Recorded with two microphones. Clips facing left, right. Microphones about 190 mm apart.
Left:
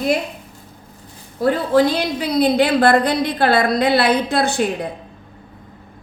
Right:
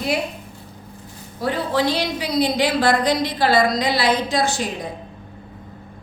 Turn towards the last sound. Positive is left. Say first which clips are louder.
# left 4 dB
turn(degrees=60)  # may be behind; listen again after turning